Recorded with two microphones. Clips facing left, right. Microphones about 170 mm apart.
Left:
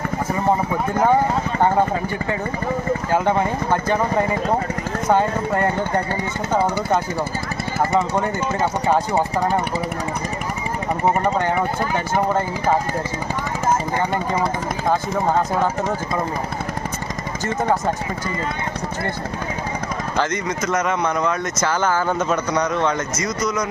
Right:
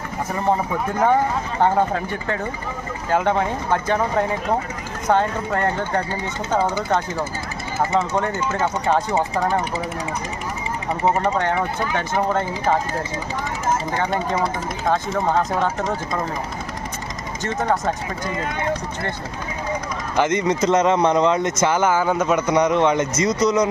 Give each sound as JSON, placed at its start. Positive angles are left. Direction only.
{"t": 3.1, "sound": "speech", "side_deg": 0}
{"t": 7.9, "sound": "speech", "side_deg": 10}
{"t": 11.2, "sound": "speech", "side_deg": 5}
{"t": 14.8, "sound": "speech", "side_deg": 10}
{"t": 17.4, "sound": "speech", "side_deg": 5}
{"t": 20.1, "sound": "speech", "side_deg": -20}
{"t": 22.4, "sound": "speech", "side_deg": -20}
{"t": 23.4, "sound": "speech", "side_deg": -30}